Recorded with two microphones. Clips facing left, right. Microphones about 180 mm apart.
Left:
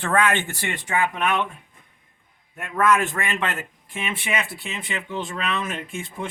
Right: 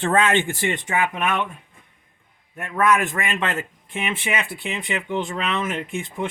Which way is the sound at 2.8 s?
15° right (ahead or behind).